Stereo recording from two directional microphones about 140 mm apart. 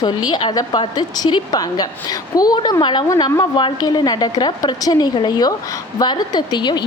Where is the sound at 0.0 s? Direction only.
30° left (ahead or behind).